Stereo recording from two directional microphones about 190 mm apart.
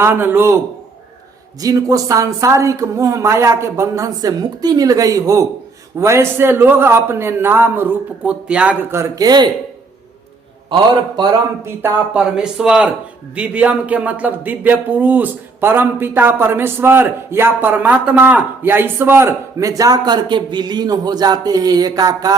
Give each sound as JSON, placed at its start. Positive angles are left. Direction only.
{"t": 0.0, "sound": "speech", "side_deg": -10}
{"t": 1.6, "sound": "speech", "side_deg": -15}
{"t": 11.2, "sound": "speech", "side_deg": -15}